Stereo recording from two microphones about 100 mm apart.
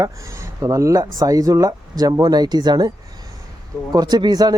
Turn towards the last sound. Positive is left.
turn(degrees=-40)  # may be behind; listen again after turning